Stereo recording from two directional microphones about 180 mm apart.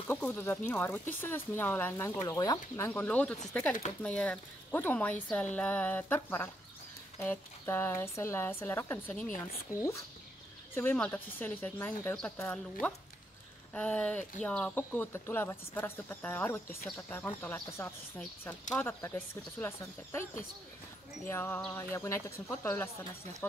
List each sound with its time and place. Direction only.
0.1 s speech: 10° left (ahead or behind)
10.7 s speech: 10° left (ahead or behind)
13.7 s speech: 5° left (ahead or behind)
21.3 s speech: 10° left (ahead or behind)